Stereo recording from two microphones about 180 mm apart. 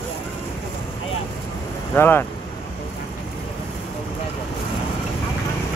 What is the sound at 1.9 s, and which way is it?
Speech, 10° left (ahead or behind).